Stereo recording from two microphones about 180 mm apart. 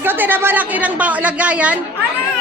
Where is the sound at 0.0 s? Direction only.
10° right (ahead or behind).